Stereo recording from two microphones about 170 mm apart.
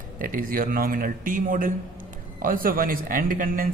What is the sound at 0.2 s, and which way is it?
A man's voice, 55° right (ahead or behind).